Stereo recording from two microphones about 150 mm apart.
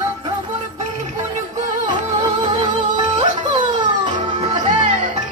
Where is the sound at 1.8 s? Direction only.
30° right (ahead or behind).